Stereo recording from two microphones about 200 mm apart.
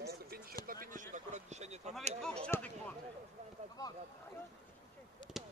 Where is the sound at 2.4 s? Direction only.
5° left (ahead or behind).